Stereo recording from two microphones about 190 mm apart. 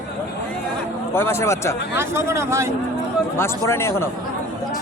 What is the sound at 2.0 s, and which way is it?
Speech, 15° right (ahead or behind).